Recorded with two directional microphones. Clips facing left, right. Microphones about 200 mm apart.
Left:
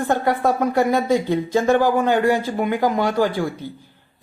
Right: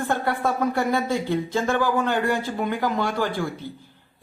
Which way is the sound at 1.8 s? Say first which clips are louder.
Left 5 dB; 50° left (ahead or behind).